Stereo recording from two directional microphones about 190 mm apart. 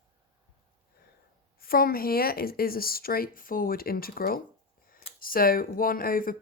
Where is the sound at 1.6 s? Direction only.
50° left (ahead or behind).